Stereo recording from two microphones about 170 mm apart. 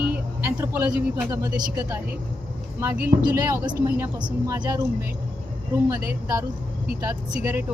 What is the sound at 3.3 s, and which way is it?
Speech, 15° right (ahead or behind).